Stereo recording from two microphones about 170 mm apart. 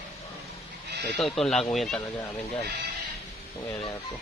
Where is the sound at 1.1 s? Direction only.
Centre (ahead or behind).